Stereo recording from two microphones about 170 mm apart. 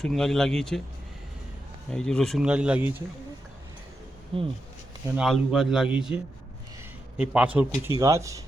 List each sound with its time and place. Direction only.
0.0 s speech: centre (ahead or behind)
1.9 s speech: 5° left (ahead or behind)
4.3 s speech: 35° right (ahead or behind)
5.1 s speech: 5° right (ahead or behind)
7.2 s a man's voice: 10° right (ahead or behind)